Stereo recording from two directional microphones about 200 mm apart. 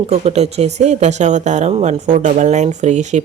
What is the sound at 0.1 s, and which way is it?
A woman's voice, 30° right (ahead or behind).